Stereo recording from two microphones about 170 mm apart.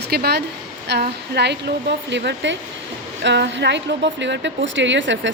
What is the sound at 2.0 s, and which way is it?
A woman's voice, 90° right.